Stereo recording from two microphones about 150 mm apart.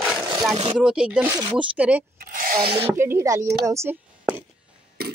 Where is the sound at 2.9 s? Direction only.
20° right (ahead or behind).